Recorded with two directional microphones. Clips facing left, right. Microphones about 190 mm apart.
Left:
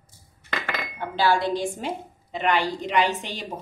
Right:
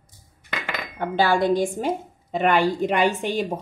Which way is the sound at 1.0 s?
50° right (ahead or behind).